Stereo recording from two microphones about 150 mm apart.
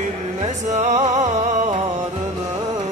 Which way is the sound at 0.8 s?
50° right (ahead or behind).